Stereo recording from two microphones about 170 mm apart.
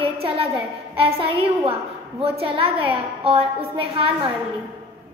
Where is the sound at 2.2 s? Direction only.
35° right (ahead or behind).